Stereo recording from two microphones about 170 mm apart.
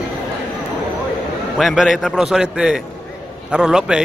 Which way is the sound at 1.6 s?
Centre (ahead or behind).